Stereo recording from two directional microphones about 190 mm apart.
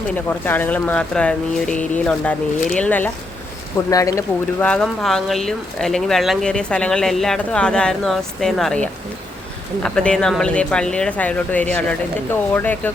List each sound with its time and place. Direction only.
0.1 s speech: 10° left (ahead or behind)
4.6 s speech: 5° left (ahead or behind)